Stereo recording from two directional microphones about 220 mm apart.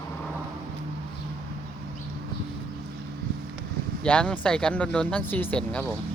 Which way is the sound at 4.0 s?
5° left (ahead or behind).